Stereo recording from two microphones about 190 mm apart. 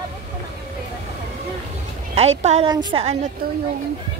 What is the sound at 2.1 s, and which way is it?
Speech, 35° right (ahead or behind).